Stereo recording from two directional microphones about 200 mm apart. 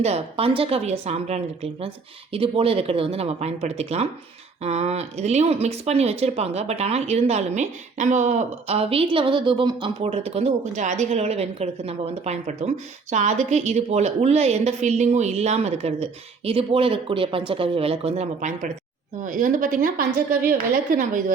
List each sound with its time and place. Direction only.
0.0 s a woman's voice: 30° right (ahead or behind)